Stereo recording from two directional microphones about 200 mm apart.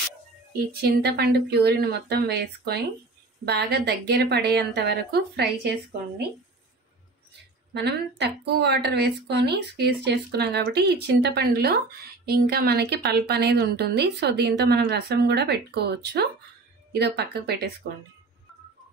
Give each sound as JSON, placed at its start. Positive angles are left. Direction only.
{"t": 0.7, "sound": "a woman's voice", "side_deg": -50}
{"t": 7.7, "sound": "a woman's voice", "side_deg": -55}